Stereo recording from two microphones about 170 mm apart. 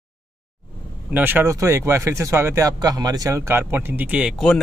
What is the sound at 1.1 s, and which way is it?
A man's voice, 10° right (ahead or behind).